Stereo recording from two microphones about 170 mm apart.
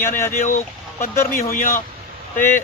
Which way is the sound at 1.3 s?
55° left (ahead or behind).